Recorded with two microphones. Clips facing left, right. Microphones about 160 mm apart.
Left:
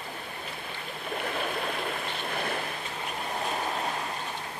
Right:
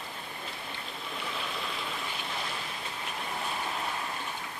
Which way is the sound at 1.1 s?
55° left (ahead or behind).